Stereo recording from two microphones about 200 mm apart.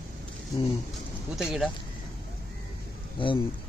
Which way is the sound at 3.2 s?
25° left (ahead or behind).